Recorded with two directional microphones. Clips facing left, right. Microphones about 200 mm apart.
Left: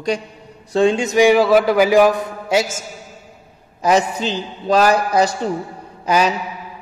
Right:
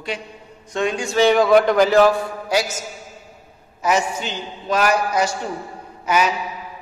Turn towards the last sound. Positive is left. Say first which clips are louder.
# left 3 dB
turn(degrees=35)  # may be behind; listen again after turning